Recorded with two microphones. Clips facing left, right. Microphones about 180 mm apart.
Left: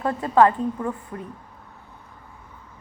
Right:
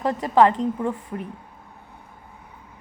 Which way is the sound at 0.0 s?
20° right (ahead or behind).